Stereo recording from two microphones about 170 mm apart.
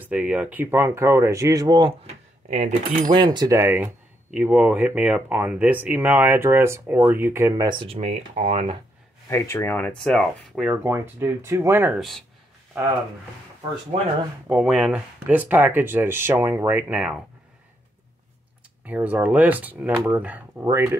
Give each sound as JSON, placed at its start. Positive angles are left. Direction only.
{"t": 0.0, "sound": "speech", "side_deg": -10}
{"t": 2.5, "sound": "speech", "side_deg": -45}
{"t": 3.1, "sound": "speech", "side_deg": -30}
{"t": 7.8, "sound": "speech", "side_deg": -35}
{"t": 9.3, "sound": "speech", "side_deg": 15}
{"t": 10.7, "sound": "speech", "side_deg": -15}
{"t": 12.0, "sound": "speech", "side_deg": 0}
{"t": 14.5, "sound": "speech", "side_deg": -5}
{"t": 18.9, "sound": "speech", "side_deg": -10}